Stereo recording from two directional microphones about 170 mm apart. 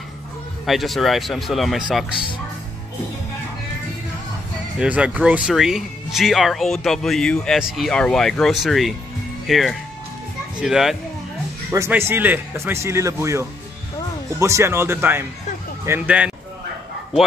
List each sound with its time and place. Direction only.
0.7 s speech: centre (ahead or behind)
4.7 s speech: 10° right (ahead or behind)
11.7 s a man's voice: 15° right (ahead or behind)